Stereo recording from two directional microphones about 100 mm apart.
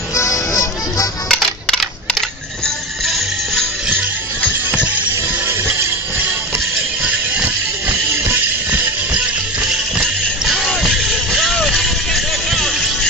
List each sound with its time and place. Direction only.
0.1 s music: 30° left (ahead or behind)
1.3 s music: 5° left (ahead or behind)
4.7 s music: 15° right (ahead or behind)
8.6 s music: 15° right (ahead or behind)
10.9 s vehicle: centre (ahead or behind)